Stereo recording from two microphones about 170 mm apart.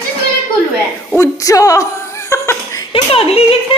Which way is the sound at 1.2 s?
20° left (ahead or behind).